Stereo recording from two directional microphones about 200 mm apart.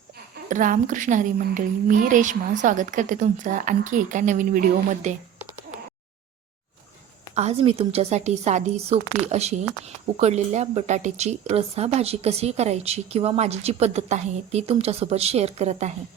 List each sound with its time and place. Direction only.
0.4 s speech: 40° right (ahead or behind)
7.3 s speech: 30° right (ahead or behind)